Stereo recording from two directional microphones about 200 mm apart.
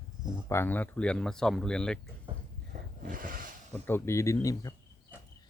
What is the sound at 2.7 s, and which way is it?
Wild animals, 45° right (ahead or behind).